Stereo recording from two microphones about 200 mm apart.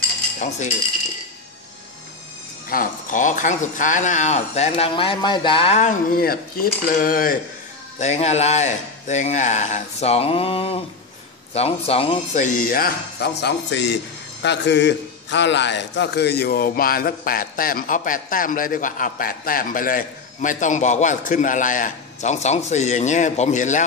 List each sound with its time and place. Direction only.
2.7 s speech: 40° left (ahead or behind)
8.0 s a man's voice: 35° left (ahead or behind)